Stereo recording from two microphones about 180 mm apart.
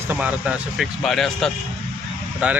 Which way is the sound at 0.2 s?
5° right (ahead or behind).